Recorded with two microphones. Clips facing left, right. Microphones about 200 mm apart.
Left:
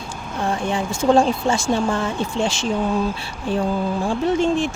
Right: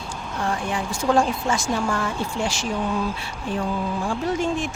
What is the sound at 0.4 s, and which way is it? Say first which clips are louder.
Speech: left 4 dB; 25° left (ahead or behind).